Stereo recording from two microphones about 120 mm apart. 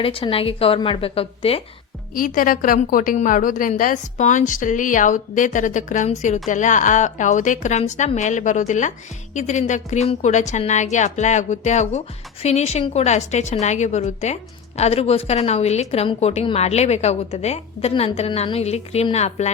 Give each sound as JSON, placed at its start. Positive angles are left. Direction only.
{"t": 0.0, "sound": "a woman's voice", "side_deg": 50}
{"t": 2.7, "sound": "a woman's voice", "side_deg": 90}
{"t": 14.8, "sound": "a woman's voice", "side_deg": 60}